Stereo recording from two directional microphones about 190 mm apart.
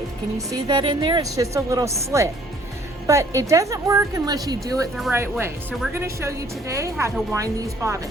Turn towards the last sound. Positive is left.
turn(degrees=-15)  # may be behind; listen again after turning